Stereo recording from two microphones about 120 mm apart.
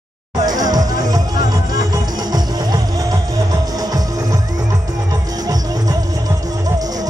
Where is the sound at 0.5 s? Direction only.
35° right (ahead or behind).